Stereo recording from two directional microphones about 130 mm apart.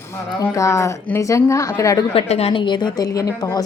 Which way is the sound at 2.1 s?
50° left (ahead or behind).